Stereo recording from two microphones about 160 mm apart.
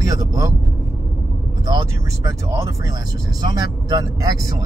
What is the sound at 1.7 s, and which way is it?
Speech, 20° right (ahead or behind).